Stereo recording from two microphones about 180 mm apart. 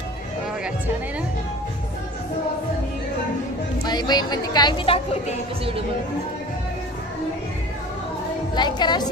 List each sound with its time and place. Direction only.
3.8 s a woman's voice: 25° left (ahead or behind)
8.5 s a woman's voice: 25° left (ahead or behind)